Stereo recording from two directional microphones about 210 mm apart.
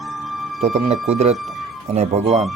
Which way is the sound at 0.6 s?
30° right (ahead or behind).